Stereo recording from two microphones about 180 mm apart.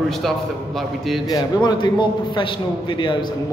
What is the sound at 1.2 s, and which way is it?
A man's voice, 20° left (ahead or behind).